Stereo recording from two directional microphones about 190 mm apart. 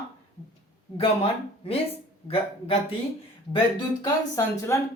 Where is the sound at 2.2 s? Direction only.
30° left (ahead or behind).